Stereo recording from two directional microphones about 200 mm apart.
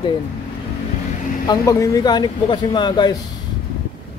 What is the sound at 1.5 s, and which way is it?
Speech, 15° left (ahead or behind).